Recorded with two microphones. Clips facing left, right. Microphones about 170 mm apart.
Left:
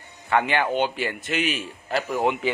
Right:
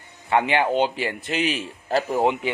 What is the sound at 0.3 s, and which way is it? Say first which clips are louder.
A man's voice: right 2 dB; 25° right (ahead or behind).